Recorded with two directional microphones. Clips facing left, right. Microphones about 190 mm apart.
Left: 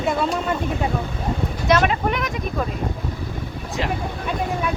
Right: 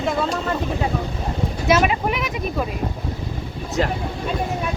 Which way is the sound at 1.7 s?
5° right (ahead or behind).